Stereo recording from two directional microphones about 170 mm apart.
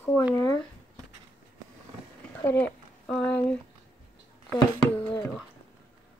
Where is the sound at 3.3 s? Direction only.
10° left (ahead or behind).